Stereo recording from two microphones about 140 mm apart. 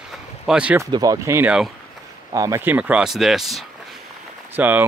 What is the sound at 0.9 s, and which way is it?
Speech, 25° right (ahead or behind).